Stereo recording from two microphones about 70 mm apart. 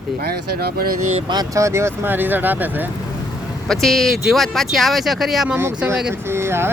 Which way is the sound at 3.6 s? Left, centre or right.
Centre.